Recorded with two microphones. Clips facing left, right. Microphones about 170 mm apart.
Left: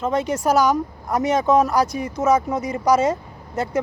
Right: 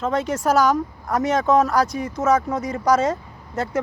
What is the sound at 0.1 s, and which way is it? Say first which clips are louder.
Speech: left 1 dB; centre (ahead or behind).